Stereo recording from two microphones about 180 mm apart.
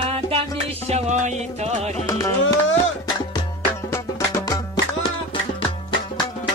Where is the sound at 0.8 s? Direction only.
40° right (ahead or behind).